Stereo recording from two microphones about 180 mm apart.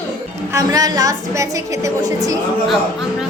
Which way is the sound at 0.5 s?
20° right (ahead or behind).